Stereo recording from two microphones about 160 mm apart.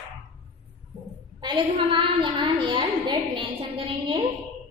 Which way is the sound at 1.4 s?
30° right (ahead or behind).